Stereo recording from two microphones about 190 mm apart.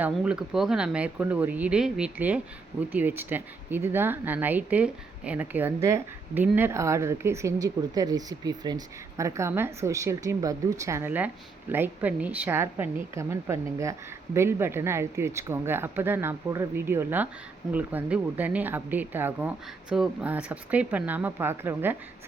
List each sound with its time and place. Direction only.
0.0 s speech: 5° right (ahead or behind)